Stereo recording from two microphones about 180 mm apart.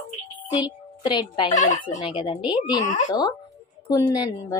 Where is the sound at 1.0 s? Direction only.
25° left (ahead or behind).